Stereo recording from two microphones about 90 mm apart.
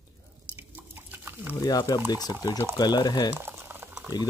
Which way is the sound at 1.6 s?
45° left (ahead or behind).